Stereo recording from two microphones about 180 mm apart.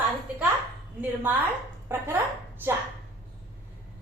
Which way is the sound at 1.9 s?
15° right (ahead or behind).